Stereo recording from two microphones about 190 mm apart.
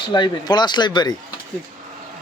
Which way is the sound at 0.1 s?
25° left (ahead or behind).